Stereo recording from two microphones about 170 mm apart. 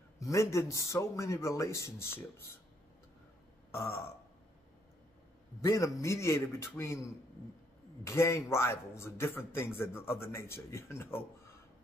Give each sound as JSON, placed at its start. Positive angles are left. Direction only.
{"t": 0.2, "sound": "a man's voice", "side_deg": 20}
{"t": 3.7, "sound": "a man's voice", "side_deg": 15}
{"t": 5.6, "sound": "a man's voice", "side_deg": 20}